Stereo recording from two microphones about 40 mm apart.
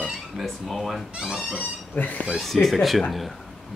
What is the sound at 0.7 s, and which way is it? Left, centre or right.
Speech, centre.